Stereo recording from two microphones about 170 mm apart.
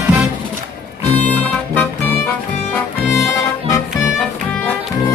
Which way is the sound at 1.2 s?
10° left (ahead or behind).